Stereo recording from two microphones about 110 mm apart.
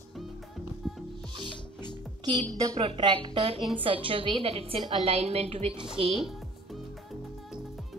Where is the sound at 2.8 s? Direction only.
45° right (ahead or behind); by 5.7 s 75° right (ahead or behind).